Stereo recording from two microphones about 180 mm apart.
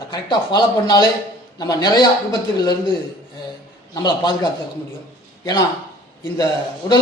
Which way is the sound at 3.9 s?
25° left (ahead or behind).